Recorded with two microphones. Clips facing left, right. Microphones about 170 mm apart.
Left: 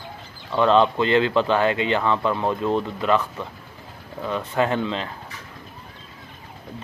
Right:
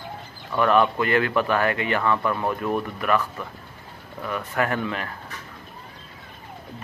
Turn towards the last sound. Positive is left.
turn(degrees=20)  # may be behind; listen again after turning